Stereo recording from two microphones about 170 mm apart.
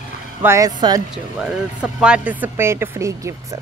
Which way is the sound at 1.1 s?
5° right (ahead or behind).